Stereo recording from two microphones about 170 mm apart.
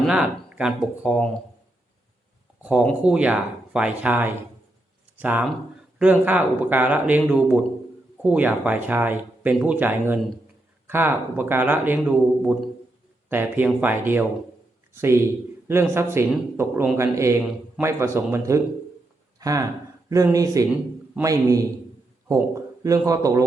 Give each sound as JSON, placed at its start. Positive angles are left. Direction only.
{"t": 0.0, "sound": "speech", "side_deg": -5}
{"t": 2.6, "sound": "a man's voice", "side_deg": -5}